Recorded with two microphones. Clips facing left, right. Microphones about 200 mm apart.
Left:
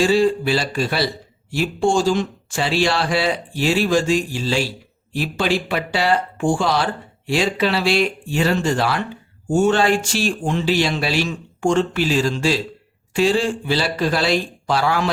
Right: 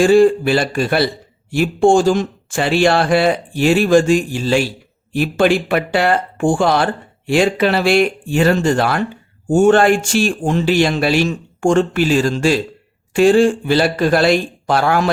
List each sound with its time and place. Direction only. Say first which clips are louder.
0.0 s a man's voice: right 6 dB; 50° right (ahead or behind)